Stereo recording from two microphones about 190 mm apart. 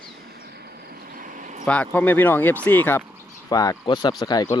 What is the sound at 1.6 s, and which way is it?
Speech, 5° left (ahead or behind).